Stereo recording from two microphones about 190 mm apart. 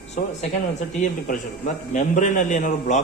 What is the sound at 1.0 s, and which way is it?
A man's voice, 45° left (ahead or behind).